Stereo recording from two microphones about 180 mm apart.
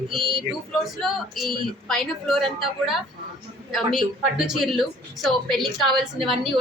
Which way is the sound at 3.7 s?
Centre (ahead or behind).